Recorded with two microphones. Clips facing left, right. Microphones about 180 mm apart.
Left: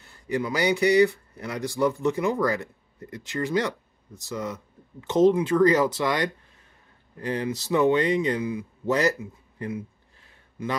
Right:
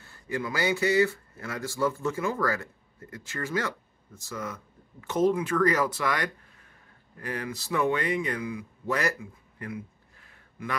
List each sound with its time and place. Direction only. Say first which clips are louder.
0.0 s speech: left 5 dB; 20° left (ahead or behind)